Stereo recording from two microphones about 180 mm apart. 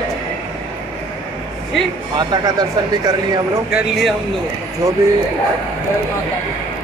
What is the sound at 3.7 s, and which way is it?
Speech, centre (ahead or behind).